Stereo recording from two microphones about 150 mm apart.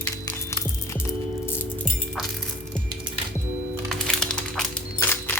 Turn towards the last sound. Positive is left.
turn(degrees=15)  # may be behind; listen again after turning